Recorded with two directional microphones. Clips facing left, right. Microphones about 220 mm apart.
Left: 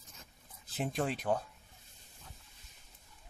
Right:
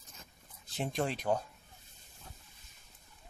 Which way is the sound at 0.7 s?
5° left (ahead or behind).